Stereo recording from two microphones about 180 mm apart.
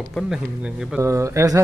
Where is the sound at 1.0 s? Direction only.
15° right (ahead or behind).